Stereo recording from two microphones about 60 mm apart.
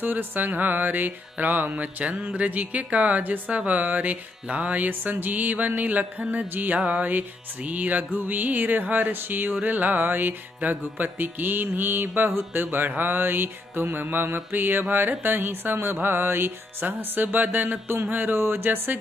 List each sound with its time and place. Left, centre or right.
0.0 s speech: right